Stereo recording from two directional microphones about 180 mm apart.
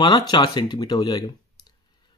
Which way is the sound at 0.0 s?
25° left (ahead or behind).